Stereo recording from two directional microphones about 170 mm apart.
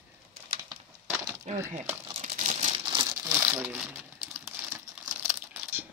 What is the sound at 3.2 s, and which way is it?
Crumpling, 15° right (ahead or behind).